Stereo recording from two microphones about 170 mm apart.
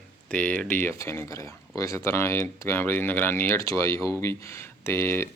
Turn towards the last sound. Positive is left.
turn(degrees=15)  # may be behind; listen again after turning